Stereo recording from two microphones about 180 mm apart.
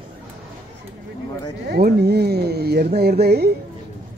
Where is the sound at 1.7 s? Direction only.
65° right (ahead or behind).